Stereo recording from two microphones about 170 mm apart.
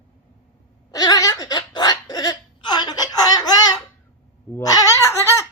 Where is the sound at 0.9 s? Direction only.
20° left (ahead or behind).